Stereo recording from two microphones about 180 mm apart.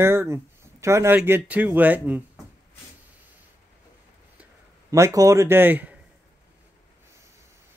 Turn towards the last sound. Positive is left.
turn(degrees=-10)  # may be behind; listen again after turning